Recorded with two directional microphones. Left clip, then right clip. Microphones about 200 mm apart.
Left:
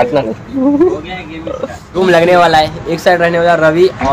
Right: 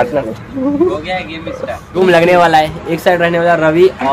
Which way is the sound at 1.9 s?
5° right (ahead or behind).